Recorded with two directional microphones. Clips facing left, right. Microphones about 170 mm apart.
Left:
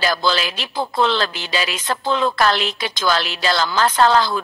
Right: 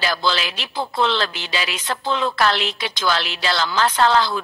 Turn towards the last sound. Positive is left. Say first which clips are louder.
# left 2 dB
turn(degrees=40)  # may be behind; listen again after turning